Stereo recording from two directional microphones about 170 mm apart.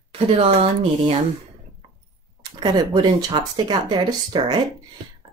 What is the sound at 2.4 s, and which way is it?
Speech, 25° right (ahead or behind).